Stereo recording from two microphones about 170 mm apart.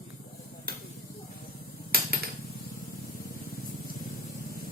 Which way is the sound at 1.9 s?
60° right (ahead or behind).